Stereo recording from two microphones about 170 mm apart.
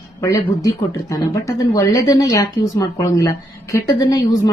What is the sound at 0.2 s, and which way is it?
A woman's voice, 20° left (ahead or behind).